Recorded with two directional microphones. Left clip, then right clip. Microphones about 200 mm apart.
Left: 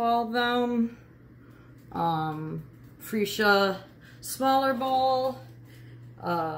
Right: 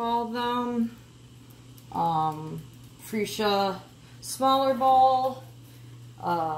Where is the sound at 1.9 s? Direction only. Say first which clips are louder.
Right 3 dB; 15° left (ahead or behind).